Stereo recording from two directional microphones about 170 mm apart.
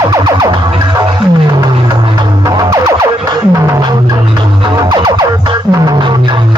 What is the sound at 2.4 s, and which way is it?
Music, 25° right (ahead or behind).